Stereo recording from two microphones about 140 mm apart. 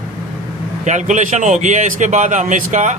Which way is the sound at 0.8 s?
60° right (ahead or behind).